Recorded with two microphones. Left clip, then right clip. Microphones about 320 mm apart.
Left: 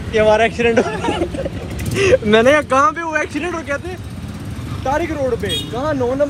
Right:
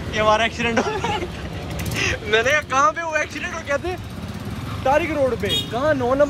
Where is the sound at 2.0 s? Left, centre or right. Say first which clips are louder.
Left 8 dB; centre.